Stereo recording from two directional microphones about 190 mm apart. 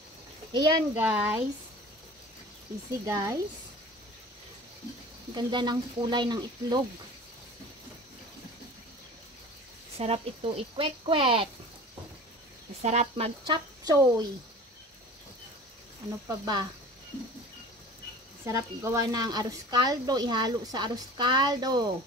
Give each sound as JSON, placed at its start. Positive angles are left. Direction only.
{"t": 0.5, "sound": "a child's voice", "side_deg": -20}
{"t": 0.9, "sound": "speech", "side_deg": -10}
{"t": 3.1, "sound": "speech", "side_deg": -15}
{"t": 5.3, "sound": "a woman's voice", "side_deg": -25}
{"t": 9.9, "sound": "a woman's voice", "side_deg": -30}
{"t": 12.8, "sound": "speech", "side_deg": -35}
{"t": 13.5, "sound": "speech", "side_deg": -20}
{"t": 16.3, "sound": "a woman's voice", "side_deg": -20}
{"t": 18.4, "sound": "a woman's voice", "side_deg": -15}